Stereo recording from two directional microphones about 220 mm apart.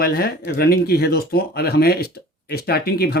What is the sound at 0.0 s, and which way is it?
Speech, 45° left (ahead or behind).